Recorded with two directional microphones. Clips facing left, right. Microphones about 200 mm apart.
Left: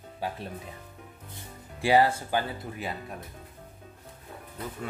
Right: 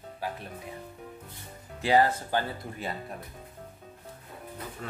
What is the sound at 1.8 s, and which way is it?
Speech, 10° left (ahead or behind).